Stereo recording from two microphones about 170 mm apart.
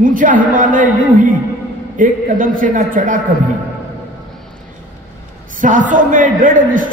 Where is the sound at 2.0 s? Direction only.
50° right (ahead or behind).